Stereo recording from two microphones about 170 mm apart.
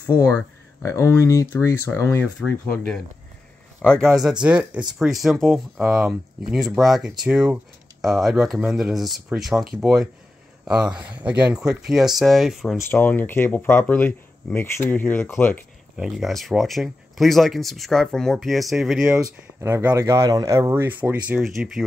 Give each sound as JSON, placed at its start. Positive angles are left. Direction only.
{"t": 0.0, "sound": "speech", "side_deg": 15}
{"t": 2.2, "sound": "speech", "side_deg": 5}
{"t": 12.7, "sound": "speech", "side_deg": 10}
{"t": 16.0, "sound": "speech", "side_deg": 0}
{"t": 19.6, "sound": "speech", "side_deg": -15}